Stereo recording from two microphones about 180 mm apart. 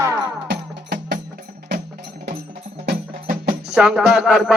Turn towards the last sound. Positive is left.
turn(degrees=-5)  # may be behind; listen again after turning